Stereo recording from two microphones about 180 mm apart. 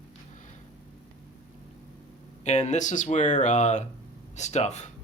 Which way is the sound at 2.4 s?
40° left (ahead or behind).